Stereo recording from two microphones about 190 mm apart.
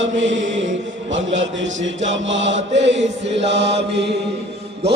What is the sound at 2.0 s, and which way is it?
Mantra, 75° right (ahead or behind).